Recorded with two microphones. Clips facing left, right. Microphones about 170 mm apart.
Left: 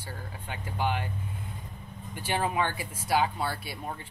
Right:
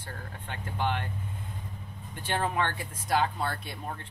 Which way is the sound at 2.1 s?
10° left (ahead or behind).